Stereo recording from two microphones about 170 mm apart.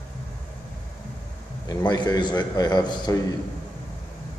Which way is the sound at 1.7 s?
25° left (ahead or behind).